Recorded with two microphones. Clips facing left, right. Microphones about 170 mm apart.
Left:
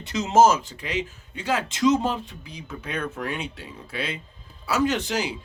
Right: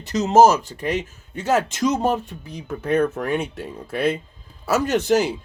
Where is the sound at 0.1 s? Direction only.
40° right (ahead or behind).